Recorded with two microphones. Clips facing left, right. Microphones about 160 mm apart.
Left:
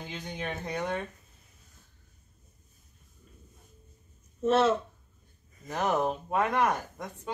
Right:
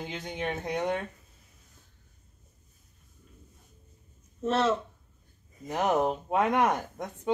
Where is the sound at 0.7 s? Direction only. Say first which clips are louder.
Right 3 dB; 15° right (ahead or behind).